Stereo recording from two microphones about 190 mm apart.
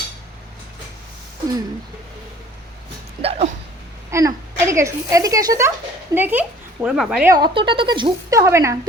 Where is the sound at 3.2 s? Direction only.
30° right (ahead or behind).